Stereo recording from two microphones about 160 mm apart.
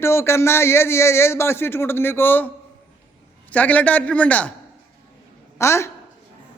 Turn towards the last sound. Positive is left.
turn(degrees=15)  # may be behind; listen again after turning